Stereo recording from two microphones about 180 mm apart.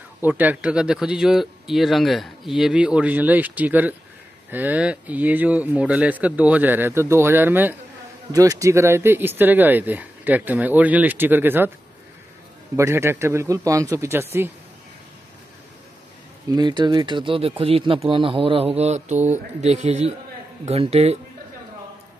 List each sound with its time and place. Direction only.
0.2 s speech: 10° right (ahead or behind)
12.7 s speech: 15° right (ahead or behind)
16.4 s speech: 25° right (ahead or behind)